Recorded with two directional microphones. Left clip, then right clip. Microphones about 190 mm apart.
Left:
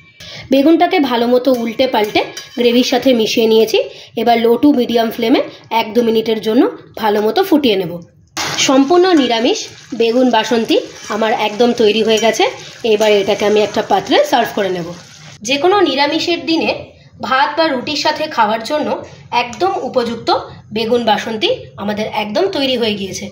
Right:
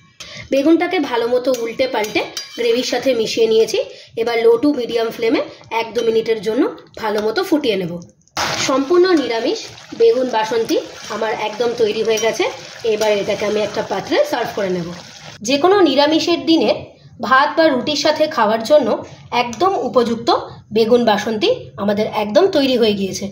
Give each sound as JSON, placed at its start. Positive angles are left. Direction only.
{"t": 0.5, "sound": "speech", "side_deg": 40}
{"t": 13.6, "sound": "speech", "side_deg": 45}
{"t": 15.4, "sound": "a woman's voice", "side_deg": -50}